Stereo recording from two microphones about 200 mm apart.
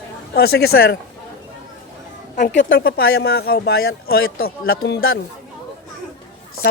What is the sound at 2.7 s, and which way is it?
Speech, 50° left (ahead or behind).